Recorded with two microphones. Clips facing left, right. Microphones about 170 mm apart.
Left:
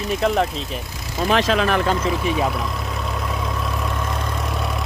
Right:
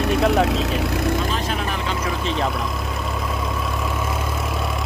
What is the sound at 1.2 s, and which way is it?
Speech, 85° left.